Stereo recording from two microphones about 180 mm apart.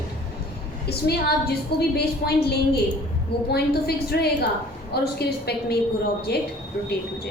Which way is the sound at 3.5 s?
60° left (ahead or behind).